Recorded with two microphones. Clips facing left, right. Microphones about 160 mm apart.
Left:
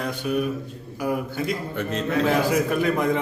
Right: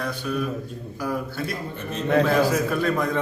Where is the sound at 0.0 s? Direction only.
15° left (ahead or behind).